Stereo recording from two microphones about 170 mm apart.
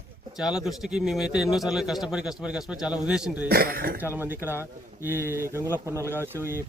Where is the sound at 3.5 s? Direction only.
60° right (ahead or behind).